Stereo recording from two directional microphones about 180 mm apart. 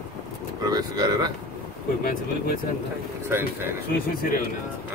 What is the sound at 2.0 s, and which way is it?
Speech, 55° left (ahead or behind).